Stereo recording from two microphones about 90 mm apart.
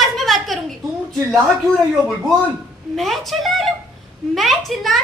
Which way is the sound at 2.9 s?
Centre (ahead or behind).